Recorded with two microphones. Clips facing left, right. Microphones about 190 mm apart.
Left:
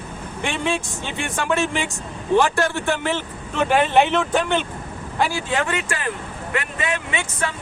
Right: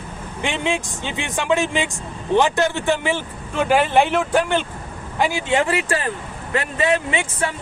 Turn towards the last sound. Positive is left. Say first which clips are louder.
# right 3 dB
turn(degrees=-30)  # may be behind; listen again after turning